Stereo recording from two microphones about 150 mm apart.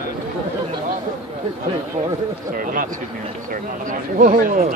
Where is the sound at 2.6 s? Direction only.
70° right (ahead or behind).